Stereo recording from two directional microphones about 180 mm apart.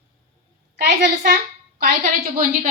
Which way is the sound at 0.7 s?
65° right (ahead or behind).